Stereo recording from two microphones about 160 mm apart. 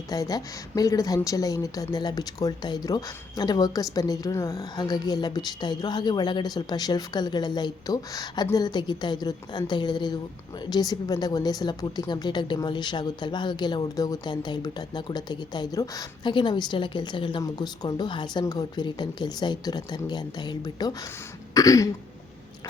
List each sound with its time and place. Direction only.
0.1 s a woman's voice: 25° left (ahead or behind)
21.5 s throat clearing: 20° left (ahead or behind)